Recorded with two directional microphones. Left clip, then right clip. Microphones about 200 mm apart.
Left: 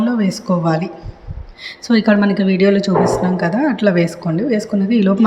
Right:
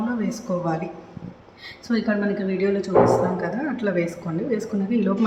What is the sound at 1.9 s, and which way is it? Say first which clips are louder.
A woman's voice: left 9 dB; 35° left (ahead or behind).